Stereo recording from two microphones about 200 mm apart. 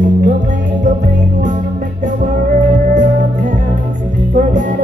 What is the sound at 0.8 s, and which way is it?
Music, 40° right (ahead or behind).